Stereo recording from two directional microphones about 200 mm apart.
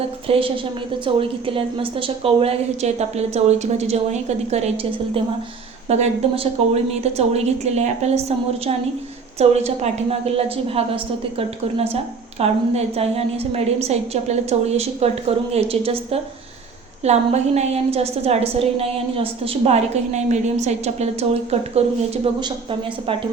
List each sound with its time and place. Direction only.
0.3 s a woman's voice: 25° right (ahead or behind)
9.4 s a woman's voice: 30° right (ahead or behind)